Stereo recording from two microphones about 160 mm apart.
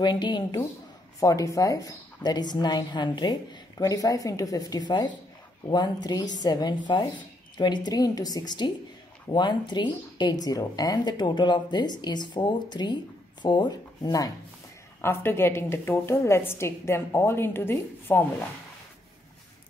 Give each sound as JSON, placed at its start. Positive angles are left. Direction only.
{"t": 0.0, "sound": "a woman's voice", "side_deg": 30}
{"t": 15.0, "sound": "a woman's voice", "side_deg": 15}